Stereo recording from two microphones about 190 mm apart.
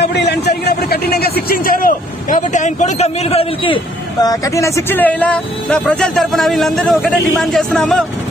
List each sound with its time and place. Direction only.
0.0 s a man's voice: 65° left (ahead or behind); by 8.0 s 5° left (ahead or behind)